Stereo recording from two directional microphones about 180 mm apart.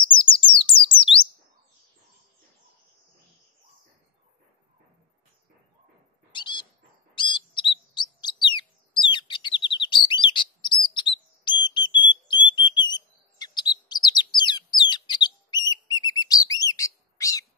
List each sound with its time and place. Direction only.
0.1 s bird: 25° left (ahead or behind)
6.3 s a sound: 25° left (ahead or behind)
7.2 s bird: 25° left (ahead or behind)